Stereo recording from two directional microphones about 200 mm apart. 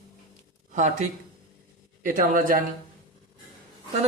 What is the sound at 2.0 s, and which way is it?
Speech, 45° right (ahead or behind).